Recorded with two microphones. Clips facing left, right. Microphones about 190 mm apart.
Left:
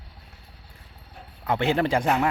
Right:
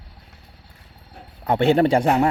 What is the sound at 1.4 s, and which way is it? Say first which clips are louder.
Speech: right 6 dB; 30° right (ahead or behind).